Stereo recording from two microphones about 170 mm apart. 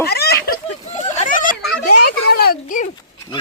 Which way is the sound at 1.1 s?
50° left (ahead or behind).